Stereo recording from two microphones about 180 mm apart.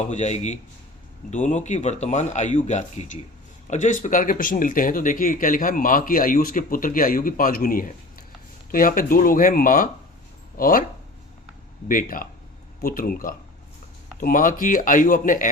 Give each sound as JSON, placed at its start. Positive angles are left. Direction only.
{"t": 0.1, "sound": "speech", "side_deg": 40}
{"t": 11.9, "sound": "speech", "side_deg": 50}